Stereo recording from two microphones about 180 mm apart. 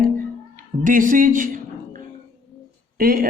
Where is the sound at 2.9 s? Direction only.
55° right (ahead or behind).